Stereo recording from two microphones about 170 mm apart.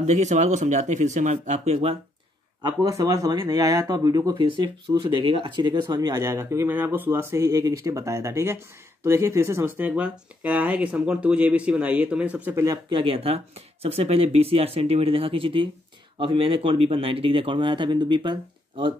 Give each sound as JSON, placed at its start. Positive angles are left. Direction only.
{"t": 0.0, "sound": "speech", "side_deg": -45}
{"t": 2.8, "sound": "speech", "side_deg": -20}
{"t": 13.0, "sound": "speech", "side_deg": -35}